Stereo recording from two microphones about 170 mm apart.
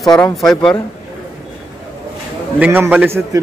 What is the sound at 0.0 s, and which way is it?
Speech, centre (ahead or behind).